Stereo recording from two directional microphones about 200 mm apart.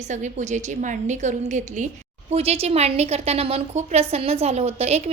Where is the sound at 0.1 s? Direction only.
40° right (ahead or behind).